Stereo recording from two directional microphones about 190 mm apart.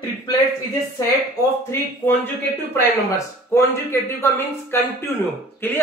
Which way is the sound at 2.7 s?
15° left (ahead or behind).